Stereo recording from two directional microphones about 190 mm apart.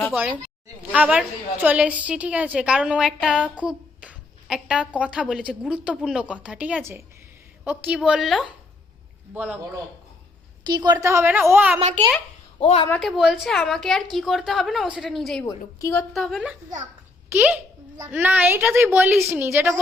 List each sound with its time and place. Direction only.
0.8 s a woman's voice: 10° right (ahead or behind)
10.7 s a woman's voice: 20° right (ahead or behind)
11.8 s a child's voice: 35° right (ahead or behind)
12.5 s speech: 30° left (ahead or behind)
12.9 s a woman's voice: centre (ahead or behind)
15.4 s a woman's voice: 15° left (ahead or behind)
16.1 s a woman's voice: centre (ahead or behind)